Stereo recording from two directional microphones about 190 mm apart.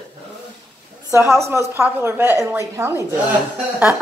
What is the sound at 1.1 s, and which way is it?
A woman's voice, 15° right (ahead or behind).